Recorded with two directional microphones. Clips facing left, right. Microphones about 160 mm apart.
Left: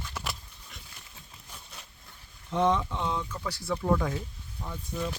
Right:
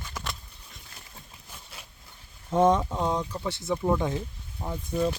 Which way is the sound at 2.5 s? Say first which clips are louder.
Right 4 dB; 45° right (ahead or behind).